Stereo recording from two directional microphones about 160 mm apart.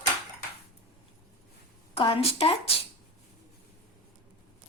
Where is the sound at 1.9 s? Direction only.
35° left (ahead or behind).